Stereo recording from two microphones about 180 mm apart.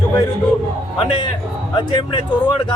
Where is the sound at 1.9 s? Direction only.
25° left (ahead or behind).